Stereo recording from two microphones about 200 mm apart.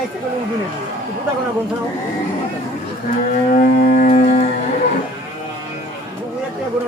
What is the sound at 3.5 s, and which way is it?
Music, 40° left (ahead or behind).